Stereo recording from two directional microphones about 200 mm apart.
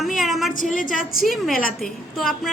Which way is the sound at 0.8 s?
45° left (ahead or behind).